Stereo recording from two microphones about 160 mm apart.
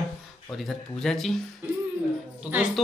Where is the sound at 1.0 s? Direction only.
Centre (ahead or behind).